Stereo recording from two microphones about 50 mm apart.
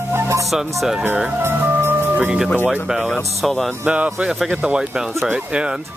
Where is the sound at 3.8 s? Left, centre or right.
Right.